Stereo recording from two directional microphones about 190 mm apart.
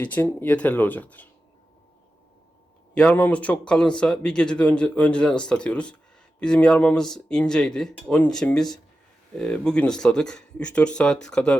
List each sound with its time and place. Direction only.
0.0 s speech: 10° left (ahead or behind)
2.9 s speech: 5° left (ahead or behind)